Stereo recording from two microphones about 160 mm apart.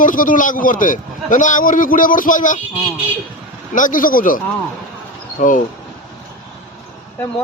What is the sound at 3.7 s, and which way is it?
A man's voice, 55° left (ahead or behind).